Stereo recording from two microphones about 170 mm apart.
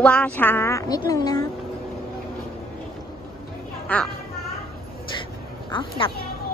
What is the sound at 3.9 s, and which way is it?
Speech, 10° left (ahead or behind).